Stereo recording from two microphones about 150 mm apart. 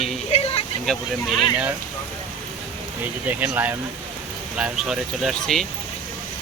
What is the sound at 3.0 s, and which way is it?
Speech, 10° right (ahead or behind).